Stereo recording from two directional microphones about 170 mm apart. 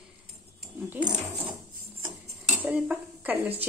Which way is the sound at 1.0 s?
25° right (ahead or behind).